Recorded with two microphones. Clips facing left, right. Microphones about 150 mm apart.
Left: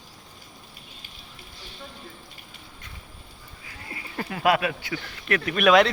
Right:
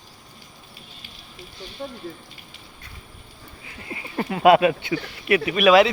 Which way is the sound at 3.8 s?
20° right (ahead or behind).